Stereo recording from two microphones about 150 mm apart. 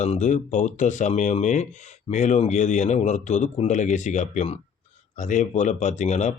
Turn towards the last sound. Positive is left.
turn(degrees=50)  # may be behind; listen again after turning